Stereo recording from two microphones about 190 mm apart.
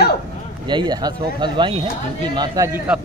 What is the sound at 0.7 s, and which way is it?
Speech, 25° right (ahead or behind).